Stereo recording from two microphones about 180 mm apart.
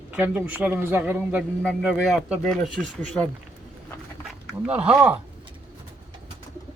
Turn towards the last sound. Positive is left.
turn(degrees=-5)  # may be behind; listen again after turning